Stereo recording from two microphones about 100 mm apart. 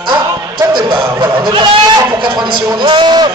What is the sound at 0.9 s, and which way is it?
Speech, 25° right (ahead or behind).